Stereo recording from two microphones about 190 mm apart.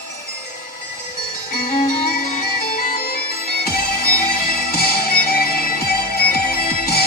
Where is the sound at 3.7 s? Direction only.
50° left (ahead or behind).